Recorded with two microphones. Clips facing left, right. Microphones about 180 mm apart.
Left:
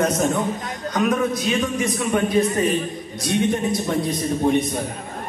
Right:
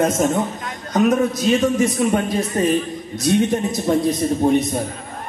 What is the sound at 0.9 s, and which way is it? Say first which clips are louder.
A man's voice: right 4 dB; 40° right (ahead or behind).